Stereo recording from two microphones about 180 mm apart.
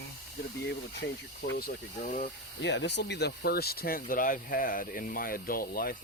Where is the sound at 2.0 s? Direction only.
50° left (ahead or behind).